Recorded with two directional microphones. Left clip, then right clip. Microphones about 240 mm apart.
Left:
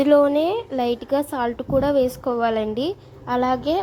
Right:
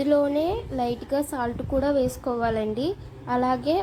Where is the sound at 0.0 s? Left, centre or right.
Left.